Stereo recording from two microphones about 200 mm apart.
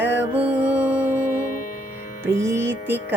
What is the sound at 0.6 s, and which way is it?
Music, 15° left (ahead or behind).